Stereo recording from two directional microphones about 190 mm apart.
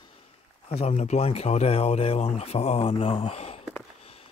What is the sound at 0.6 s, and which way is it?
Speech, 35° left (ahead or behind).